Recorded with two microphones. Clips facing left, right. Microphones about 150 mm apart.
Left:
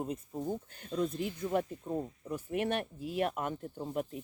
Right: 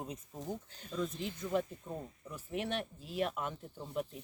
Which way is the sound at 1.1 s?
60° left (ahead or behind).